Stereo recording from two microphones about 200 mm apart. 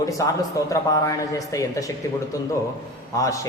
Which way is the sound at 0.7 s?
15° left (ahead or behind).